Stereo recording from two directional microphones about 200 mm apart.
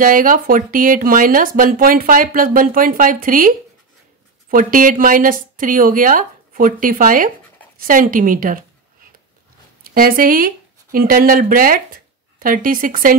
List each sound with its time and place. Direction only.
0.0 s speech: 45° right (ahead or behind)
9.8 s speech: 45° right (ahead or behind)